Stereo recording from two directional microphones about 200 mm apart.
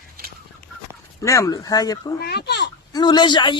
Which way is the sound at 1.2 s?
15° left (ahead or behind).